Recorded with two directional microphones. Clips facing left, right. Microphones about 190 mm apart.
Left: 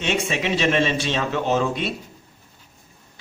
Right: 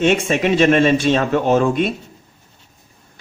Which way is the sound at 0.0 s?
50° right (ahead or behind).